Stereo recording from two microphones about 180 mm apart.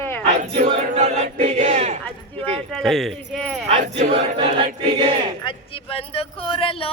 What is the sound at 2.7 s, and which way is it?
Speech, centre (ahead or behind).